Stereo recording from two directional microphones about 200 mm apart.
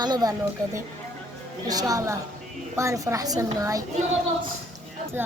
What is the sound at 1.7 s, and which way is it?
Speech, 20° right (ahead or behind).